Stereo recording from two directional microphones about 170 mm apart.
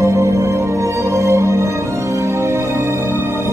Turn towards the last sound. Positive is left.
turn(degrees=-15)  # may be behind; listen again after turning